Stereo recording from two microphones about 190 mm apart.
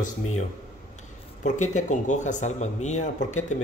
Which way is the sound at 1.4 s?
40° left (ahead or behind).